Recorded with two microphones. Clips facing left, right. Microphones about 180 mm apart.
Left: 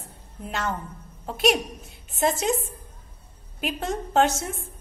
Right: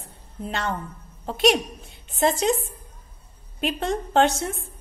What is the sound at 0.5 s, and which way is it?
A woman's voice, 5° left (ahead or behind).